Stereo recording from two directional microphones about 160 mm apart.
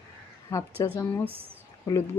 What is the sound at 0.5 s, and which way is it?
Speech, 15° left (ahead or behind).